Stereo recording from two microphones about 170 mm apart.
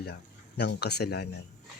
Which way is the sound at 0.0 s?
80° left.